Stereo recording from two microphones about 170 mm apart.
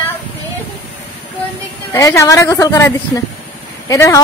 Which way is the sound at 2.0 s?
15° left (ahead or behind).